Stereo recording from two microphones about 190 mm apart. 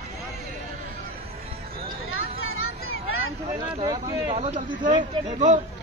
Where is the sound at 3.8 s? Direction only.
25° right (ahead or behind).